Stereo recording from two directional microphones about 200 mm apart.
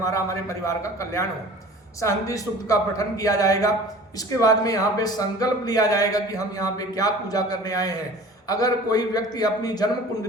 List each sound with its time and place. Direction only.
0.0 s a man's voice: 15° left (ahead or behind)